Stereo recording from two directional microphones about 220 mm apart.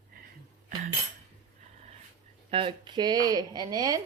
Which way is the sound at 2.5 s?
25° right (ahead or behind).